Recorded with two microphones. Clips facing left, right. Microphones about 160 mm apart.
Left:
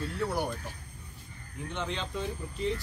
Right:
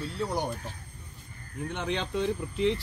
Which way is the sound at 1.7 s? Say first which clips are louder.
Right 4 dB; 60° right (ahead or behind).